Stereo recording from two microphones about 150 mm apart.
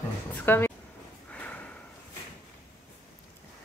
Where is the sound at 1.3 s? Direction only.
10° left (ahead or behind).